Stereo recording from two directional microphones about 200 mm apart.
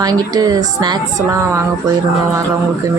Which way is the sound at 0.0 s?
20° right (ahead or behind).